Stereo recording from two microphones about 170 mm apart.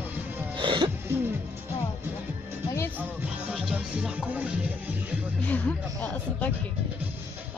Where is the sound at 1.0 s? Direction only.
15° right (ahead or behind).